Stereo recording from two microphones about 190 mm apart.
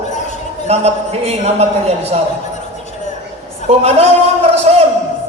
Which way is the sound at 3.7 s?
35° right (ahead or behind).